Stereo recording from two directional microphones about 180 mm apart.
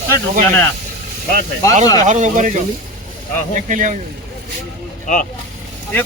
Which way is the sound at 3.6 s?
45° right (ahead or behind).